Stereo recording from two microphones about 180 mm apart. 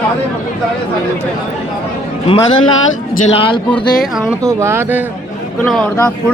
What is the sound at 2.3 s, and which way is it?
A man's voice, 30° left (ahead or behind).